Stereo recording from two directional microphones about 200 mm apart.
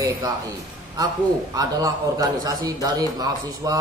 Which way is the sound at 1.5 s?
20° right (ahead or behind).